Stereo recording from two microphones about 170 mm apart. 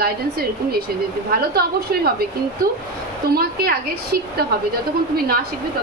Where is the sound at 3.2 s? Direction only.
65° right (ahead or behind).